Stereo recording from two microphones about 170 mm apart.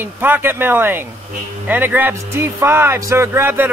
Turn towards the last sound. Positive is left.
turn(degrees=-10)  # may be behind; listen again after turning